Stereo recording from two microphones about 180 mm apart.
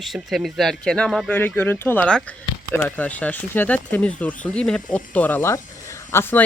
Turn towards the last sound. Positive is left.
turn(degrees=10)  # may be behind; listen again after turning